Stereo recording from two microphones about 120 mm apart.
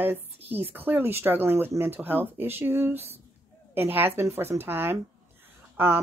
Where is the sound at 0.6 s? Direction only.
15° right (ahead or behind).